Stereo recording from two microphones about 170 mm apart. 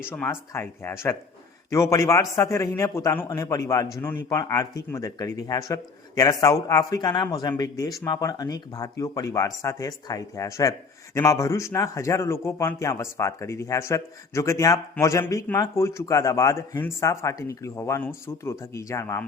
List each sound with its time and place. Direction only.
0.1 s speech: 15° left (ahead or behind)